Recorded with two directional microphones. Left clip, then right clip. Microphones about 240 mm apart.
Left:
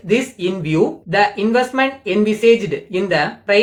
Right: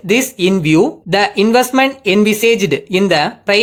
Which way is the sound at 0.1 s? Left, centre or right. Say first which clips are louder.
Right 5 dB; right.